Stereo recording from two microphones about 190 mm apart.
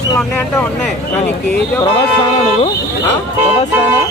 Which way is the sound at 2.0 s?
30° left (ahead or behind).